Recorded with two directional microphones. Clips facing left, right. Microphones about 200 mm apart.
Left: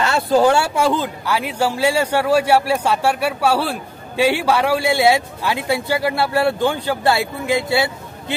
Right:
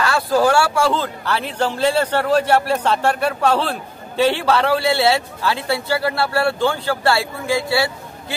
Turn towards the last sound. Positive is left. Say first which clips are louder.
# left 1 dB
turn(degrees=20)  # may be behind; listen again after turning